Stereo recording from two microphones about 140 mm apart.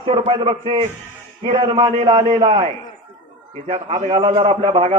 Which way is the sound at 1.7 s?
30° right (ahead or behind).